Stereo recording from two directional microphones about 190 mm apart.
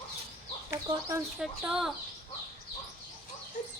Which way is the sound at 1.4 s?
Centre (ahead or behind).